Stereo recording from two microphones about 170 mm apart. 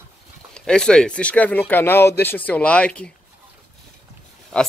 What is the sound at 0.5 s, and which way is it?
Speech, 5° left (ahead or behind).